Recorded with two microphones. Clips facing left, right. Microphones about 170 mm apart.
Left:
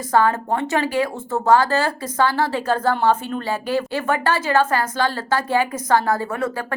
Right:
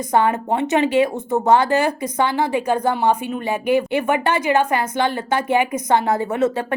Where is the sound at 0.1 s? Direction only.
20° right (ahead or behind).